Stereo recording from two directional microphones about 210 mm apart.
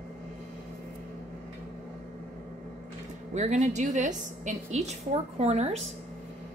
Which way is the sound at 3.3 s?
35° right (ahead or behind).